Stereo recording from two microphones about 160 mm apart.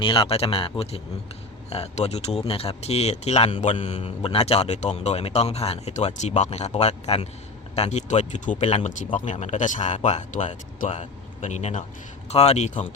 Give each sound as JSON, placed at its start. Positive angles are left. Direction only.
{"t": 0.0, "sound": "speech", "side_deg": 30}